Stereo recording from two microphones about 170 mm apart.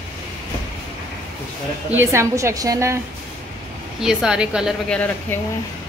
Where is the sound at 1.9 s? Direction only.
15° right (ahead or behind).